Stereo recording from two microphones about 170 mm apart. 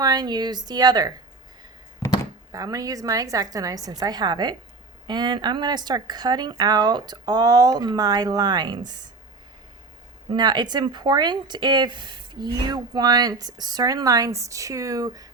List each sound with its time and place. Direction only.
0.0 s speech: 25° right (ahead or behind)
2.5 s speech: 20° right (ahead or behind)
10.3 s speech: 25° right (ahead or behind)